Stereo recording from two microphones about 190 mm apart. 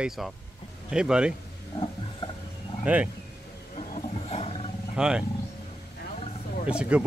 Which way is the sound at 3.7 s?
35° left (ahead or behind).